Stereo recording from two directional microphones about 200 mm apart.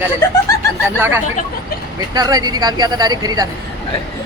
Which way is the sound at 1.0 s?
10° right (ahead or behind).